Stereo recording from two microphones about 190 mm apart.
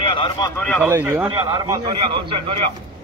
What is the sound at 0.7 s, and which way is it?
A man's voice, 10° right (ahead or behind).